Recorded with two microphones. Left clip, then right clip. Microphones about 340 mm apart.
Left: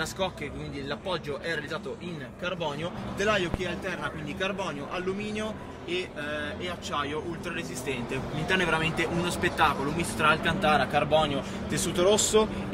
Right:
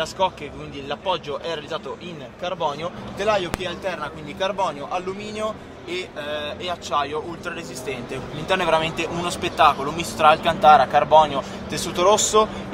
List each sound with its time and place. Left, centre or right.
0.2 s a man's voice: centre
3.2 s a man's voice: centre